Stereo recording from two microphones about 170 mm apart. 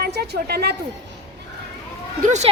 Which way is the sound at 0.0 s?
70° right (ahead or behind).